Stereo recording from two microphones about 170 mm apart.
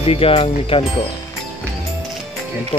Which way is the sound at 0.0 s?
35° left (ahead or behind).